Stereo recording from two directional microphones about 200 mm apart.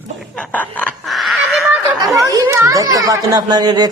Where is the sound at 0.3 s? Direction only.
5° left (ahead or behind).